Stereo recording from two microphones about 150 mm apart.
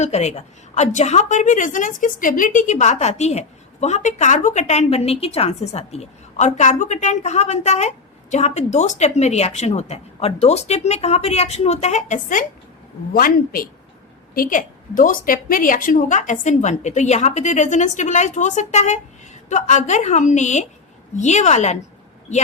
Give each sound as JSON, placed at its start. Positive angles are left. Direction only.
{"t": 0.0, "sound": "a woman's voice", "side_deg": 50}
{"t": 13.1, "sound": "a woman's voice", "side_deg": 75}